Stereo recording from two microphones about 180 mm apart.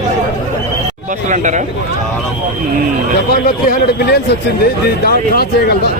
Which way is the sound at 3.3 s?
55° left (ahead or behind).